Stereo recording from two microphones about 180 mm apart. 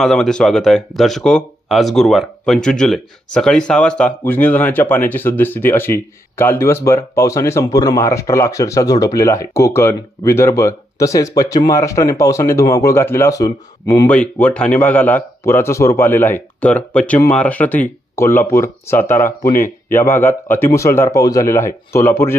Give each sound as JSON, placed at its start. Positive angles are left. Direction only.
{"t": 0.0, "sound": "speech", "side_deg": 5}
{"t": 14.1, "sound": "speech", "side_deg": 10}